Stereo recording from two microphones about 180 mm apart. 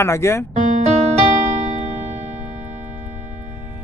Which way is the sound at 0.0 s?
15° left (ahead or behind).